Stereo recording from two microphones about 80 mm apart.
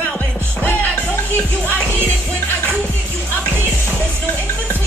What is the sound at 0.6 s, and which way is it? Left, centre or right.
Music, left.